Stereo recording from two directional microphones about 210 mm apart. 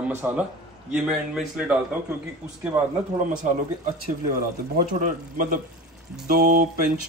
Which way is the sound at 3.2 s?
40° right (ahead or behind).